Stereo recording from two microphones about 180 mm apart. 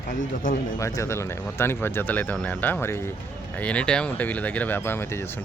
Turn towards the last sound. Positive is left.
turn(degrees=15)  # may be behind; listen again after turning